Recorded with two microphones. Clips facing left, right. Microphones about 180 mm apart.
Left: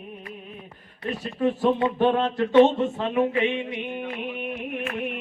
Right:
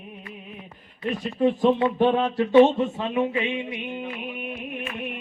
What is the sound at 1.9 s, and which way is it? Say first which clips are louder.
Speech: right 1 dB; 10° right (ahead or behind).